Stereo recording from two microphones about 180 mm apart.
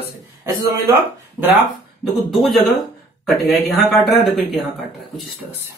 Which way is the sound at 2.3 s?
Centre (ahead or behind).